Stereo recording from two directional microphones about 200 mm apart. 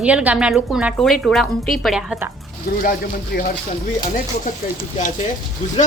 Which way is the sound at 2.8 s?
45° left (ahead or behind).